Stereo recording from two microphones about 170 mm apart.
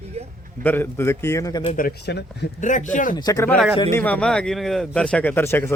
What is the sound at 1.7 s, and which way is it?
Speech, 70° left (ahead or behind).